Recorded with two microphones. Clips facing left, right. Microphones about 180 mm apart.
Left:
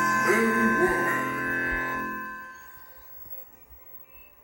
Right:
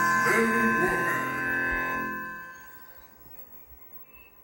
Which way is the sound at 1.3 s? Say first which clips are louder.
Left 2 dB; 50° right (ahead or behind).